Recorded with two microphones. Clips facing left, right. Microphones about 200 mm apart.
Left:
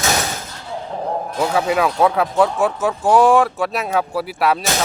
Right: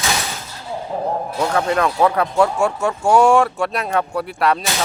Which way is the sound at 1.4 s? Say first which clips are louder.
Left 1 dB; 5° left (ahead or behind).